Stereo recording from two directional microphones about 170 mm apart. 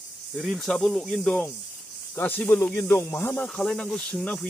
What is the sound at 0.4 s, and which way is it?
Speech, centre (ahead or behind).